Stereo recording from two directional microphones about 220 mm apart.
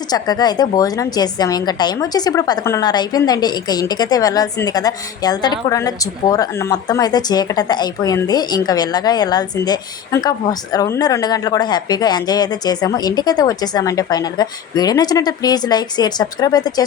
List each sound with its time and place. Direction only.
0.1 s a woman's voice: 20° left (ahead or behind)